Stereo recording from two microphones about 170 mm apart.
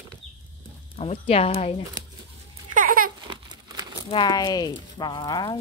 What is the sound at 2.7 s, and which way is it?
Babbling, 55° right (ahead or behind).